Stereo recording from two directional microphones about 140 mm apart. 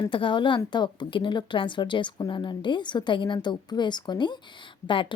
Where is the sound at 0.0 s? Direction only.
35° left (ahead or behind).